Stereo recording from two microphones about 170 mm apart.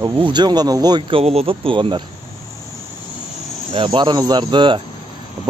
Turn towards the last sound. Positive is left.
turn(degrees=-30)  # may be behind; listen again after turning